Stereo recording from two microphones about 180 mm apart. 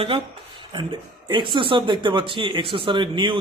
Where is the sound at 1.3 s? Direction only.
25° right (ahead or behind).